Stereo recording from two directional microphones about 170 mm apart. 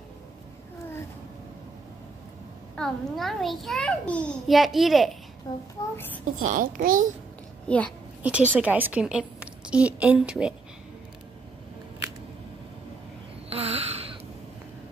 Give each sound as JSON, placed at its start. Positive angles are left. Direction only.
{"t": 2.7, "sound": "a child's voice", "side_deg": 0}
{"t": 5.5, "sound": "a child's voice", "side_deg": 25}
{"t": 5.9, "sound": "a child's voice", "side_deg": 10}
{"t": 6.4, "sound": "a child's voice", "side_deg": -55}
{"t": 7.6, "sound": "a child's voice", "side_deg": 10}
{"t": 8.2, "sound": "a woman's voice", "side_deg": -10}
{"t": 13.5, "sound": "a sound", "side_deg": -35}